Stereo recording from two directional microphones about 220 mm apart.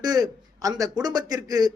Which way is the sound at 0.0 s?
15° right (ahead or behind).